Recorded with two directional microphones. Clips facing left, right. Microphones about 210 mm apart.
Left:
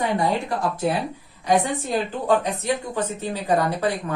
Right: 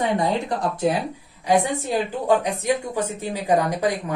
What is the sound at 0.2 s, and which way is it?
A woman's voice, 20° right (ahead or behind).